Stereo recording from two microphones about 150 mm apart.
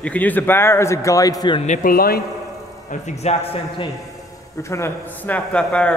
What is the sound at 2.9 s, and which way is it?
Speech, 50° left (ahead or behind).